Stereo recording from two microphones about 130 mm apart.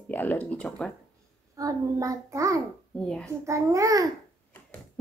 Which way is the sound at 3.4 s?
25° right (ahead or behind).